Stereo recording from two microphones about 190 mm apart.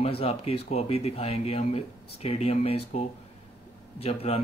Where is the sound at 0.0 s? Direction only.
30° left (ahead or behind).